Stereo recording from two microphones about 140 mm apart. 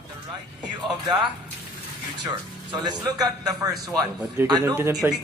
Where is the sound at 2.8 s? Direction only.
25° right (ahead or behind).